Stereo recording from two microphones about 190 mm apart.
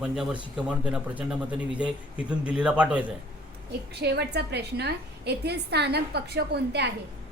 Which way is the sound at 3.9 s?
60° right (ahead or behind).